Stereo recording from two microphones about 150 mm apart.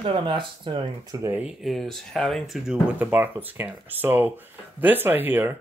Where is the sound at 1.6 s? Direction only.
Centre (ahead or behind).